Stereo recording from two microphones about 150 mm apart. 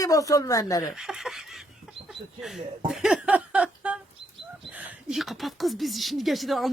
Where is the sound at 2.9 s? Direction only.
5° right (ahead or behind).